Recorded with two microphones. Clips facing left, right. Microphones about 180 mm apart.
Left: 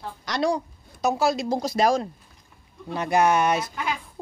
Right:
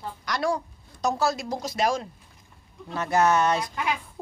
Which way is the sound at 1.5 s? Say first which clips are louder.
Left 4 dB; 35° left (ahead or behind).